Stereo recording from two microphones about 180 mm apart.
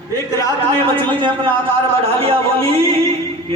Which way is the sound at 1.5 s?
30° right (ahead or behind).